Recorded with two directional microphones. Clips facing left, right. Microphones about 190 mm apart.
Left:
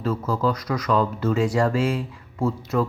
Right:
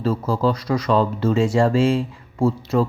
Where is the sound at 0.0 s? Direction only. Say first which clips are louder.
Right 3 dB; 30° right (ahead or behind).